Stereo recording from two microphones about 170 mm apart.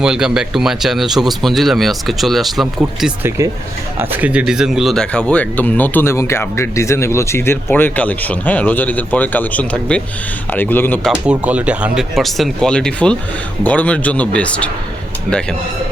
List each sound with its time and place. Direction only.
0.0 s speech: 5° right (ahead or behind)
3.2 s speech: 20° right (ahead or behind); by 11.1 s 10° left (ahead or behind)
11.1 s speech: 5° right (ahead or behind)